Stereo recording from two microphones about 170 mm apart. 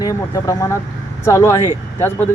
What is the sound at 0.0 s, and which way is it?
Speech, 20° left (ahead or behind).